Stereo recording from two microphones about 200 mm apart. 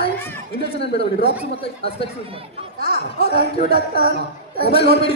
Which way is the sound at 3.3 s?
50° right (ahead or behind).